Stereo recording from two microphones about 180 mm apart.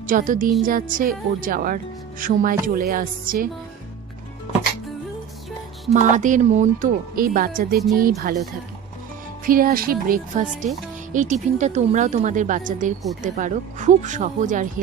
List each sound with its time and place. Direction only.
0.0 s speech: 50° right (ahead or behind)
5.9 s speech: 45° right (ahead or behind)
9.5 s speech: 55° right (ahead or behind)